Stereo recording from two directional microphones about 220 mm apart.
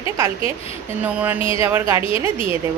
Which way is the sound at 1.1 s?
5° right (ahead or behind).